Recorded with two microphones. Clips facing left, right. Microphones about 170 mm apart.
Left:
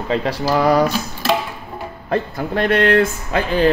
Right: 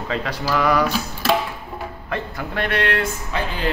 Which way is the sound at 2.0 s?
40° left (ahead or behind).